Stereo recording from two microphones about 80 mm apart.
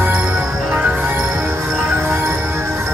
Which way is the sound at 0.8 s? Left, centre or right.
Right.